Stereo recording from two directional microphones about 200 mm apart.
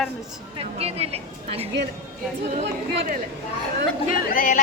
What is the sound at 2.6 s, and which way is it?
Speech, 55° right (ahead or behind).